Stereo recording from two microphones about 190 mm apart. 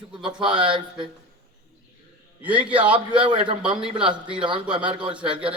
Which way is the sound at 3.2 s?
25° right (ahead or behind).